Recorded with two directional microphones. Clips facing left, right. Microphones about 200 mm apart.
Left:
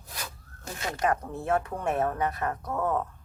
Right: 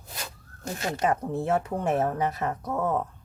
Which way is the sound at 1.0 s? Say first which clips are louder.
Right 1 dB; 25° right (ahead or behind).